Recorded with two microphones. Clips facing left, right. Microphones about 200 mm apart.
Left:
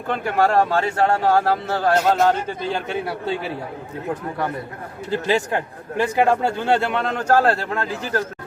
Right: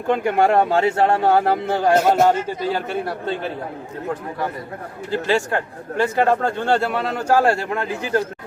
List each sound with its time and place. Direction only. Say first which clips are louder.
0.1 s a man's voice: right 2 dB; 15° right (ahead or behind)
5.1 s a man's voice: right 1 dB; 20° left (ahead or behind); by 8.2 s 15° right (ahead or behind)